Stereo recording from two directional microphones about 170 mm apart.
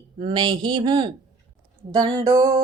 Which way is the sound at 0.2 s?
30° right (ahead or behind).